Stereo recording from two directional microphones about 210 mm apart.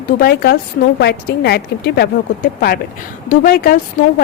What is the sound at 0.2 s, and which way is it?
A woman's voice, 50° left (ahead or behind).